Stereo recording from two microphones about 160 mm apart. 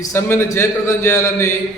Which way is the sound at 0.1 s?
15° left (ahead or behind).